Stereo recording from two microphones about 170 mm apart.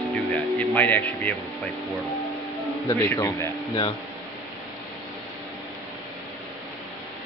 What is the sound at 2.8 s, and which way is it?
Speech, 15° left (ahead or behind).